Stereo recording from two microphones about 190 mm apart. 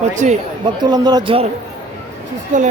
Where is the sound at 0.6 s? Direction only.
20° right (ahead or behind).